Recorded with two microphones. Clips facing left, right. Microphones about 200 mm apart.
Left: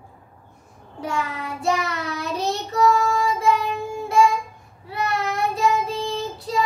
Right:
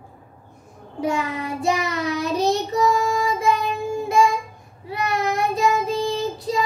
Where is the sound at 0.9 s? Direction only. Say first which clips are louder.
Right 4 dB; 15° right (ahead or behind).